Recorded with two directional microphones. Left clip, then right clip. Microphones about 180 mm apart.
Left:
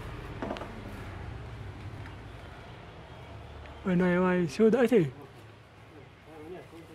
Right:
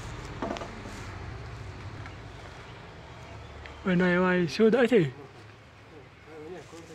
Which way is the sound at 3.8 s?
Centre (ahead or behind).